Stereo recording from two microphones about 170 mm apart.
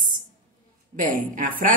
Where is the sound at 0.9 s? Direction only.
50° right (ahead or behind).